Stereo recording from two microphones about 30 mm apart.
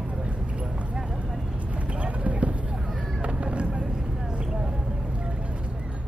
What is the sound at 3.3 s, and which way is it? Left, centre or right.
Vehicle, right.